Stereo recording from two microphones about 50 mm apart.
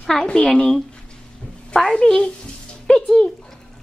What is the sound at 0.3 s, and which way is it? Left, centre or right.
Speech, centre.